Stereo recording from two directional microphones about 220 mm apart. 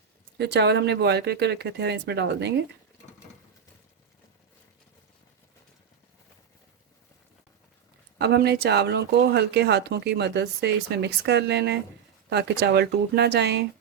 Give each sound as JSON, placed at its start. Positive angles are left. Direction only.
{"t": 0.3, "sound": "speech", "side_deg": -50}
{"t": 8.2, "sound": "speech", "side_deg": -50}